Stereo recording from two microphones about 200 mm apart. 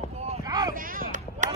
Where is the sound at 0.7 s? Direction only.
45° right (ahead or behind).